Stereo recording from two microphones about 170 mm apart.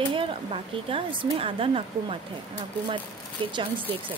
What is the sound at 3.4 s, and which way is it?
Speech, 30° right (ahead or behind).